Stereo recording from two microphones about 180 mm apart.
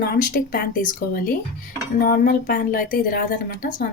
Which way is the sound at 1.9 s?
50° left (ahead or behind).